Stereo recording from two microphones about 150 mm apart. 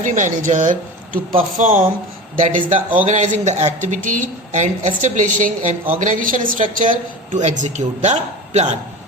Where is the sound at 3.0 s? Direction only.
55° right (ahead or behind).